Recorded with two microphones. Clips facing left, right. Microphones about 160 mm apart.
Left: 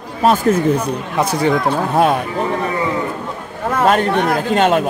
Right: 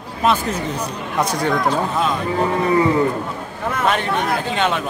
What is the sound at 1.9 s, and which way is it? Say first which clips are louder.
Speech: left 6 dB; 60° left (ahead or behind).